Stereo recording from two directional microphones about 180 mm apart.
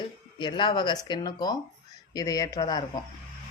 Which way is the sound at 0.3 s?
25° left (ahead or behind).